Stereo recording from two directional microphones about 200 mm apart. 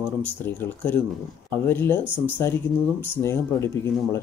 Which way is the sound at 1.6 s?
10° left (ahead or behind).